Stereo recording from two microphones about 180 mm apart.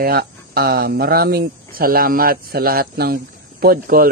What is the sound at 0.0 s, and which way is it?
Speech, 60° right (ahead or behind).